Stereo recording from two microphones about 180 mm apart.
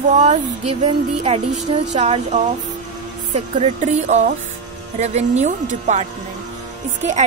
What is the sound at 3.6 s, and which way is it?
A woman's voice, 40° right (ahead or behind).